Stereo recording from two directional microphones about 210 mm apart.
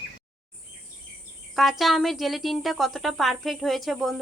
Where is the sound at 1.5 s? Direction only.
Centre (ahead or behind).